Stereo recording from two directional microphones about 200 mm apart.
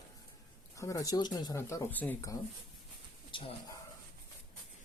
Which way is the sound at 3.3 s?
25° left (ahead or behind).